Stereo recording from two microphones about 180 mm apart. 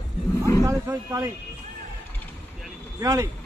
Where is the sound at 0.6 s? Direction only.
15° right (ahead or behind).